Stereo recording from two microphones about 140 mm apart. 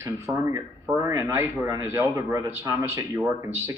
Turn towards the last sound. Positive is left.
turn(degrees=-20)  # may be behind; listen again after turning